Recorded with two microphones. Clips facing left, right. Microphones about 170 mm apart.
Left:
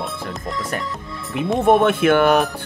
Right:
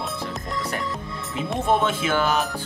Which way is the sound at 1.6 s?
60° left (ahead or behind).